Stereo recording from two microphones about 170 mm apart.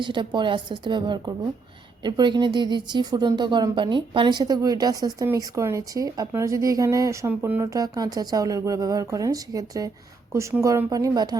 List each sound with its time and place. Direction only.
0.0 s speech: 30° right (ahead or behind)